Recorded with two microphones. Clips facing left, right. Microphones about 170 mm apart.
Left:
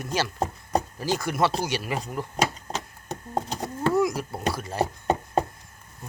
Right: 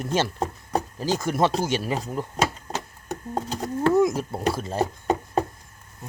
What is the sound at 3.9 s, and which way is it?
Speech, 20° right (ahead or behind).